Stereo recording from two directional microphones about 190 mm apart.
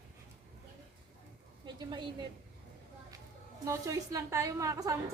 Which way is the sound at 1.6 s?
25° right (ahead or behind).